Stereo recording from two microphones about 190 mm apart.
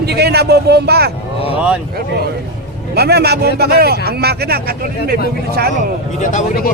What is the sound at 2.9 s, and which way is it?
A man's voice, 55° right (ahead or behind).